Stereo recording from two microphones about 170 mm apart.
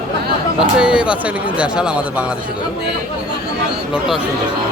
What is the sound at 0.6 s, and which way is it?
Speech, 5° right (ahead or behind).